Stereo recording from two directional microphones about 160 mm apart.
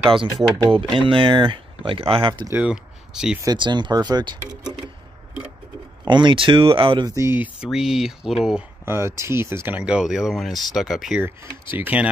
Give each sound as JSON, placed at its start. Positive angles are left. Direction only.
{"t": 0.7, "sound": "speech", "side_deg": -30}
{"t": 2.5, "sound": "speech", "side_deg": -5}
{"t": 3.4, "sound": "speech", "side_deg": -30}
{"t": 6.0, "sound": "speech", "side_deg": -30}
{"t": 7.2, "sound": "speech", "side_deg": -15}
{"t": 8.8, "sound": "speech", "side_deg": -15}